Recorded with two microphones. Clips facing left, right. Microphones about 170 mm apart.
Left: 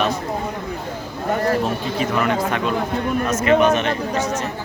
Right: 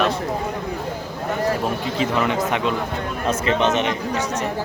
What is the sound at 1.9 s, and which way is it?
Speech, 20° right (ahead or behind).